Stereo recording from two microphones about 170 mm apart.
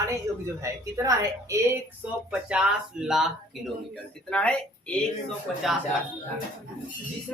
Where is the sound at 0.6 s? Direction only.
20° right (ahead or behind).